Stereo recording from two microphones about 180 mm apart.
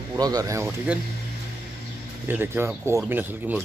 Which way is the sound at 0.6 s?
5° right (ahead or behind).